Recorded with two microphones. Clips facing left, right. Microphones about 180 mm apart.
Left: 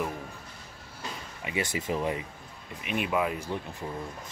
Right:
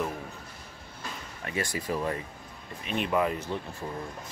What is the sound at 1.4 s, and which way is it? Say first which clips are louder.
A man's voice: left 1 dB; 15° left (ahead or behind).